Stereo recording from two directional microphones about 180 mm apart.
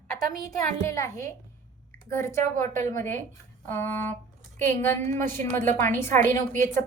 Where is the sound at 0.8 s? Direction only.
15° left (ahead or behind).